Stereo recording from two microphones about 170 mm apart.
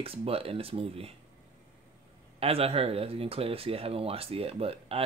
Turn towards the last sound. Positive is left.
turn(degrees=-35)  # may be behind; listen again after turning